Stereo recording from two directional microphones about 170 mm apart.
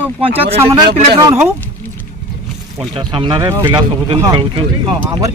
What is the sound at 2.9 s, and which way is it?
Speech, 30° right (ahead or behind).